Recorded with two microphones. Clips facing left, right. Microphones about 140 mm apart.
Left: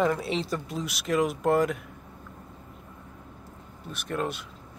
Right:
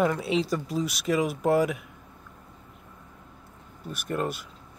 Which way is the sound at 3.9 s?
5° right (ahead or behind).